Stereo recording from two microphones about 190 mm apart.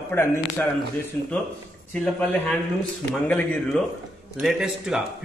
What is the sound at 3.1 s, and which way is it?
A man's voice, 5° left (ahead or behind).